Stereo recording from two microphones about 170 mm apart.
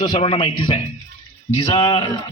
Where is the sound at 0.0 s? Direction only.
25° left (ahead or behind).